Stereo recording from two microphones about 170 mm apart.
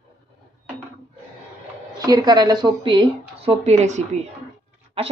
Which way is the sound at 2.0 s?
25° right (ahead or behind).